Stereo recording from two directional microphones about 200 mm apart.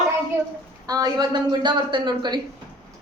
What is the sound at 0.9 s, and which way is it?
A woman's voice, 20° right (ahead or behind).